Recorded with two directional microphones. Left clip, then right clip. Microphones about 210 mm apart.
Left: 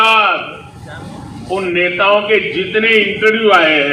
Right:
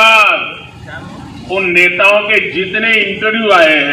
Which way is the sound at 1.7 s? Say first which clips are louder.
Right 4 dB; 45° right (ahead or behind).